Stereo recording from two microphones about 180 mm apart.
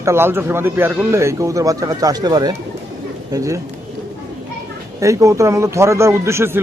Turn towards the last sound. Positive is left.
turn(degrees=-15)  # may be behind; listen again after turning